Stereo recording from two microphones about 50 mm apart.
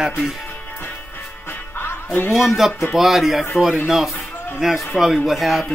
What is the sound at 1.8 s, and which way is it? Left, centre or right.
Music, left.